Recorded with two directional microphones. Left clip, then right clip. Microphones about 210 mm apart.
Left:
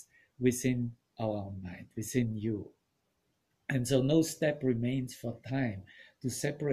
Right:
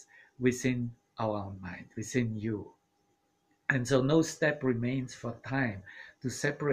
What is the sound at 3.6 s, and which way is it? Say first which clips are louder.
Speech: right 2 dB; 5° left (ahead or behind).